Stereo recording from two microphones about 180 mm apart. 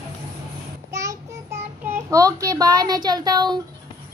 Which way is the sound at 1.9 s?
20° right (ahead or behind).